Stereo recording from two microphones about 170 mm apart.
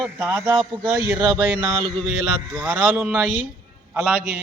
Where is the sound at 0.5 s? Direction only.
25° right (ahead or behind).